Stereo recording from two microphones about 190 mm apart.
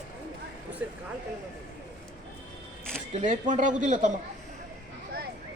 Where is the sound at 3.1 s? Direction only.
40° right (ahead or behind).